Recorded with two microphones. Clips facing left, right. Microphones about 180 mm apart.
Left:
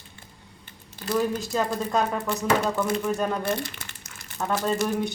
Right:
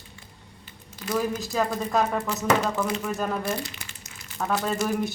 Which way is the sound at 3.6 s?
55° left (ahead or behind).